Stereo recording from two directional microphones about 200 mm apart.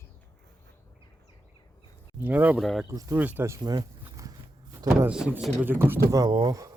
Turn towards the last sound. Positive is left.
turn(degrees=-20)  # may be behind; listen again after turning